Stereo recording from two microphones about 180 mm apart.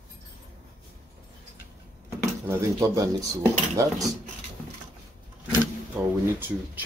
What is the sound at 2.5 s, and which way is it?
Speech, 15° right (ahead or behind).